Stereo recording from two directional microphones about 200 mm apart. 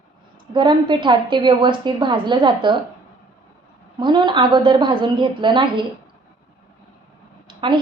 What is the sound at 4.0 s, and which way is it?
A woman's voice, 25° right (ahead or behind).